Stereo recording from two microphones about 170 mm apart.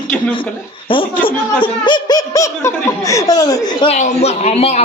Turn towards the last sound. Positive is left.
turn(degrees=40)  # may be behind; listen again after turning